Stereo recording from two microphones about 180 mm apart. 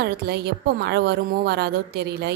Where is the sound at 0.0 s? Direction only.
65° right (ahead or behind).